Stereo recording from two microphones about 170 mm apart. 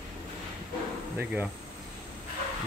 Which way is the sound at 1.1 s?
10° right (ahead or behind).